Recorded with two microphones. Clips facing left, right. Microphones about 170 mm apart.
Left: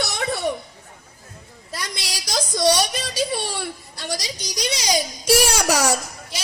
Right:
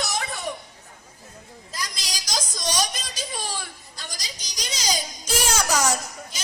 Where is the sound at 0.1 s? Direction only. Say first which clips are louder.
Left 5 dB; 70° left (ahead or behind).